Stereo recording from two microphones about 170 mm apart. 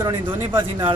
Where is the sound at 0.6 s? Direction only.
30° right (ahead or behind).